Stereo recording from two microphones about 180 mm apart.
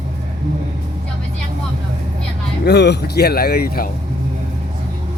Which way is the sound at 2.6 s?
70° left (ahead or behind).